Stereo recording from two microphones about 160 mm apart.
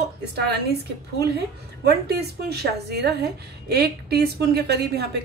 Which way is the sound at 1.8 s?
85° right.